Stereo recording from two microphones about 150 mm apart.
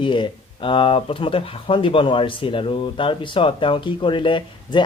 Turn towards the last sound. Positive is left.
turn(degrees=35)  # may be behind; listen again after turning